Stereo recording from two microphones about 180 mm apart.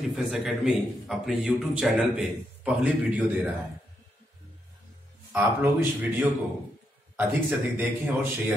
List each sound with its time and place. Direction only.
0.1 s a man's voice: 5° right (ahead or behind)
5.3 s a man's voice: 10° right (ahead or behind)